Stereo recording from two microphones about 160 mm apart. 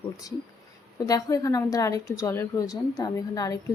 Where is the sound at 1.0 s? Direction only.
20° left (ahead or behind).